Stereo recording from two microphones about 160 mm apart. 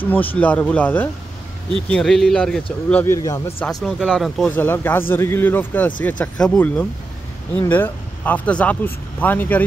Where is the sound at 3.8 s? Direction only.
Centre (ahead or behind).